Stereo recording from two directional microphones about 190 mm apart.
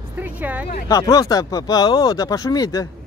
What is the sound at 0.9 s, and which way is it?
Speech, 20° left (ahead or behind).